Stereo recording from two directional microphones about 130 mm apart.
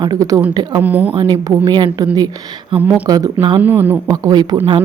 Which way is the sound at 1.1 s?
40° right (ahead or behind).